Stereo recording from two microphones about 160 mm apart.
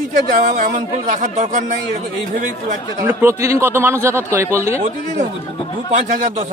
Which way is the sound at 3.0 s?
15° right (ahead or behind).